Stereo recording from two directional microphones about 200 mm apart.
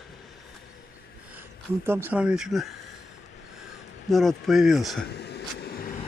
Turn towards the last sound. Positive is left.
turn(degrees=45)  # may be behind; listen again after turning